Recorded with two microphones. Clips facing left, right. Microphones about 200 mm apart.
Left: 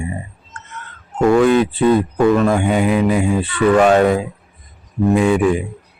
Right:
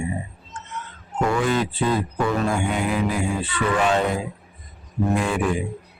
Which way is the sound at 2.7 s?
Centre (ahead or behind).